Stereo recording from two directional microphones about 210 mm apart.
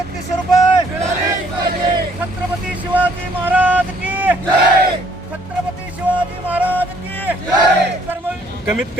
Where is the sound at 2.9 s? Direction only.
10° right (ahead or behind).